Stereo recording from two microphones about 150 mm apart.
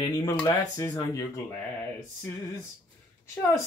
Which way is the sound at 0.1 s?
25° left (ahead or behind).